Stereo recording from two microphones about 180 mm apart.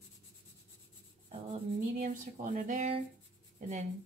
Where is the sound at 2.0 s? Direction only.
50° right (ahead or behind).